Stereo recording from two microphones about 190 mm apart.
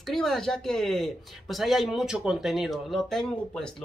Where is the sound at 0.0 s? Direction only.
Centre (ahead or behind).